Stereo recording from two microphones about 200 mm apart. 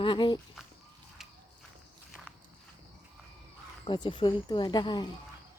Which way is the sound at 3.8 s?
25° left (ahead or behind).